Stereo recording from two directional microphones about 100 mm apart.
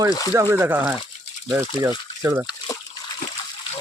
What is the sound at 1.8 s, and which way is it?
Speech, 35° right (ahead or behind).